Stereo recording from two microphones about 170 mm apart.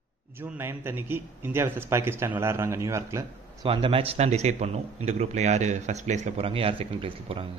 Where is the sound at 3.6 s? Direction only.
30° right (ahead or behind).